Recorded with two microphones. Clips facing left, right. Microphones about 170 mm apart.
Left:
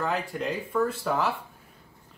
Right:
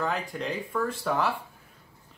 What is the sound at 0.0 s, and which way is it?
Speech, 5° left (ahead or behind).